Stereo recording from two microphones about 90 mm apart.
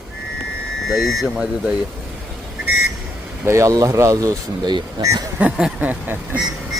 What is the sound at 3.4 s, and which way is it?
Speech, 30° right (ahead or behind).